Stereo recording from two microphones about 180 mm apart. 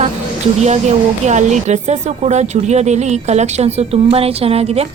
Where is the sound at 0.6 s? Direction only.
40° right (ahead or behind).